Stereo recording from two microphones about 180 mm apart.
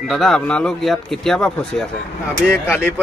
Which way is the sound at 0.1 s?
Centre (ahead or behind).